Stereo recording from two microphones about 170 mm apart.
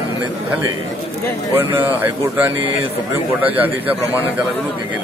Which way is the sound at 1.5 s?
15° right (ahead or behind).